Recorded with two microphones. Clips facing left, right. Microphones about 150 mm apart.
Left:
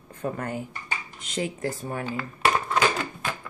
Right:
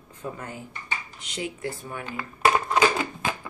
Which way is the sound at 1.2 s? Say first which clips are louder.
Left 4 dB; 45° left (ahead or behind).